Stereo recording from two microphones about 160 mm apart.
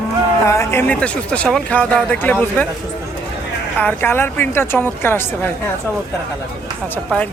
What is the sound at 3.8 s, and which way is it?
Speech, 15° left (ahead or behind).